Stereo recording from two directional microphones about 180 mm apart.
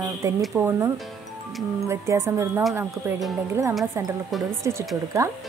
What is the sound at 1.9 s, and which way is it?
Speech, 15° right (ahead or behind).